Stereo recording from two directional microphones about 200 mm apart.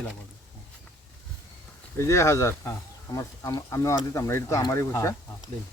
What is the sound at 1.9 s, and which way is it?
Speech, 15° left (ahead or behind).